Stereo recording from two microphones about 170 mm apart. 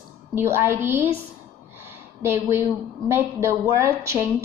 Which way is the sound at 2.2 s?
15° right (ahead or behind).